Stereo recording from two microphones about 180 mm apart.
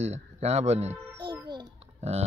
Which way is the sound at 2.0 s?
35° right (ahead or behind).